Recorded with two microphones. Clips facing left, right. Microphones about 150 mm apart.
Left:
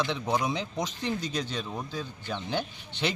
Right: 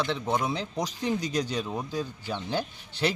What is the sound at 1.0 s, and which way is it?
A man's voice, 10° right (ahead or behind).